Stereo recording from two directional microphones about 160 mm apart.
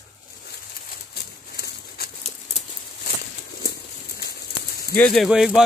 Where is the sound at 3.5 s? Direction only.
80° left.